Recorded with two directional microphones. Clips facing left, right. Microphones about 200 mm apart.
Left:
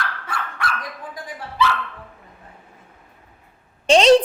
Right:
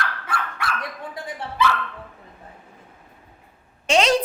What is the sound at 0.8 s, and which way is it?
Dog, 25° right (ahead or behind).